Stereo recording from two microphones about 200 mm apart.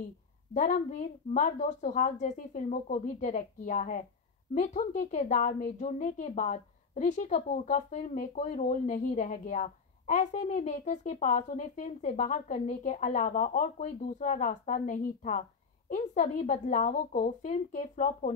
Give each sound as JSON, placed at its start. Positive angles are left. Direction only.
{"t": 0.6, "sound": "a woman's voice", "side_deg": 35}